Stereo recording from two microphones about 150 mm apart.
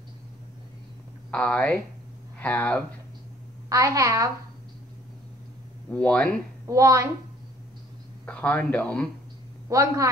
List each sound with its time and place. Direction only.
1.3 s speech: 10° left (ahead or behind)
3.6 s a child's voice: 20° right (ahead or behind)
5.9 s speech: 10° left (ahead or behind)
6.7 s a child's voice: 20° right (ahead or behind)
8.3 s speech: 10° left (ahead or behind)
9.7 s a child's voice: 20° right (ahead or behind)